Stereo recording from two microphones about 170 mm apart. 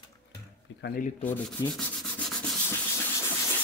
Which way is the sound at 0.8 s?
60° left (ahead or behind).